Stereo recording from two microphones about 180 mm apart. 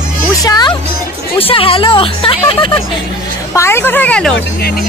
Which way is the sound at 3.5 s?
15° left (ahead or behind).